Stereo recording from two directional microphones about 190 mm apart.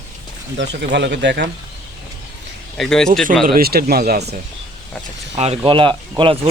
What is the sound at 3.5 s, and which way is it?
Speech, 55° right (ahead or behind).